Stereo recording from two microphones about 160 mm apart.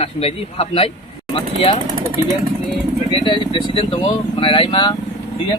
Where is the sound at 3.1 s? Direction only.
30° left (ahead or behind).